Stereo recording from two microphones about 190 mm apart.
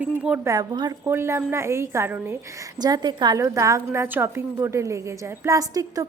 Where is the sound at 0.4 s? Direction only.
20° right (ahead or behind).